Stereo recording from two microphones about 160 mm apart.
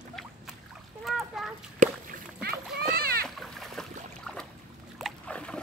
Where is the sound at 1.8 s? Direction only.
55° right (ahead or behind).